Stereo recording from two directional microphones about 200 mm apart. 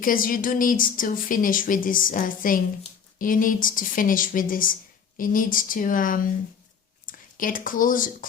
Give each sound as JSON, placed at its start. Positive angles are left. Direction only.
{"t": 0.0, "sound": "a woman's voice", "side_deg": 45}